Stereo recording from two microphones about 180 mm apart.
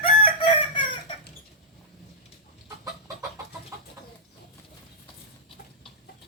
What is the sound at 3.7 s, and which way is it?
Chicken, 15° right (ahead or behind).